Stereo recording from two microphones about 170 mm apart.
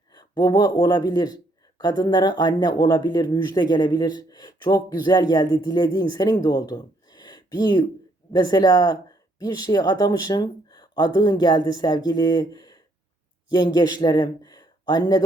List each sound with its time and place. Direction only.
0.1 s speech: 25° left (ahead or behind)